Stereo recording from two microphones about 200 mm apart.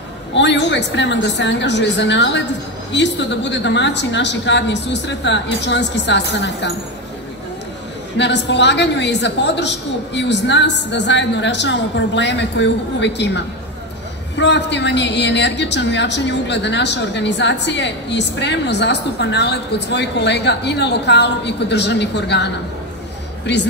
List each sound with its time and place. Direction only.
0.3 s a woman's voice: 60° left (ahead or behind)
8.2 s a woman's voice: 60° left (ahead or behind)